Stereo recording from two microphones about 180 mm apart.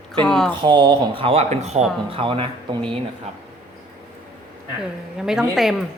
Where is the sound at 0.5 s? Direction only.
25° right (ahead or behind).